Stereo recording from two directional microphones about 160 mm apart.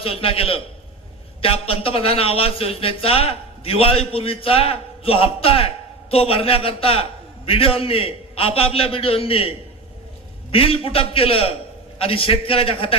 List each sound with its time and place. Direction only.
0.0 s a man's voice: 35° left (ahead or behind)